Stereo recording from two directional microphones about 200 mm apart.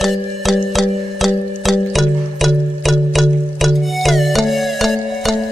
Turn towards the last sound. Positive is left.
turn(degrees=0)  # may be behind; listen again after turning